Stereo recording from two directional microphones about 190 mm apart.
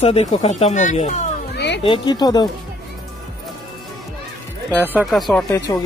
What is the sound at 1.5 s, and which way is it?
Music, 60° left (ahead or behind).